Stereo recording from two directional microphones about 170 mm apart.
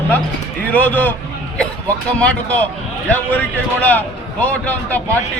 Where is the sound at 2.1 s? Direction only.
5° left (ahead or behind).